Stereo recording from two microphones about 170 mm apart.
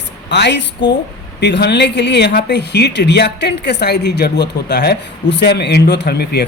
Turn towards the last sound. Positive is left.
turn(degrees=75)  # may be behind; listen again after turning